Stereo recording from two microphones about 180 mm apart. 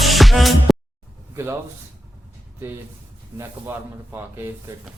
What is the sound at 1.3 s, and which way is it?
Speech, 15° right (ahead or behind).